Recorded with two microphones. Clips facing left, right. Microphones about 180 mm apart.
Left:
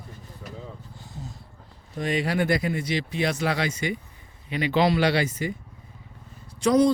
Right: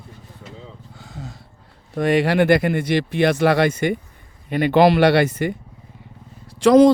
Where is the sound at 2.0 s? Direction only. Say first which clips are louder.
Right 8 dB; 65° right (ahead or behind).